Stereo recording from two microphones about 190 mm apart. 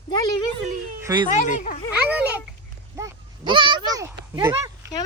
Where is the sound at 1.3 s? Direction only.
40° left (ahead or behind).